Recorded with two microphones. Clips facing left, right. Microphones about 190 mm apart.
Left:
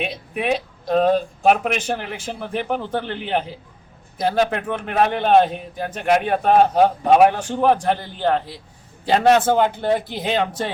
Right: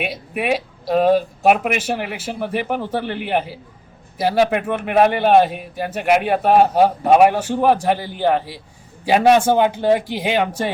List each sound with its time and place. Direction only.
0.0 s a man's voice: 10° right (ahead or behind)